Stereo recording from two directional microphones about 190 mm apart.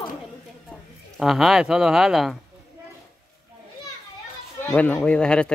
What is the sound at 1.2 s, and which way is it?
Speech, centre (ahead or behind).